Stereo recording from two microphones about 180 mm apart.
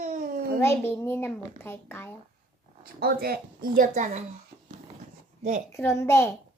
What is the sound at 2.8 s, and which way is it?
Speech, 55° right (ahead or behind).